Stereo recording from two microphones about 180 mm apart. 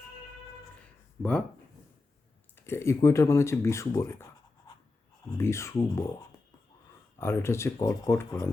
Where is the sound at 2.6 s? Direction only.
15° left (ahead or behind).